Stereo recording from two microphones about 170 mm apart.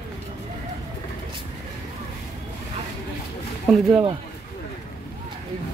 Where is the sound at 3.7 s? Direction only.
5° right (ahead or behind).